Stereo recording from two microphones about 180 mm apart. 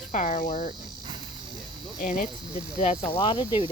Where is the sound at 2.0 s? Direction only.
45° left (ahead or behind); by 3.7 s 30° left (ahead or behind).